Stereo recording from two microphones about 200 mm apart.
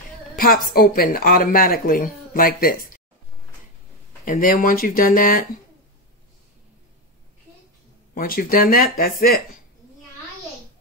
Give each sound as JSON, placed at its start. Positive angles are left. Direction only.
{"t": 0.4, "sound": "speech", "side_deg": 45}
{"t": 4.2, "sound": "speech", "side_deg": 45}
{"t": 8.1, "sound": "speech", "side_deg": 45}